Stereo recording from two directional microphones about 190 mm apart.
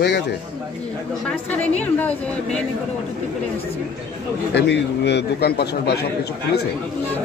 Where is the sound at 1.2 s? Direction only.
5° left (ahead or behind).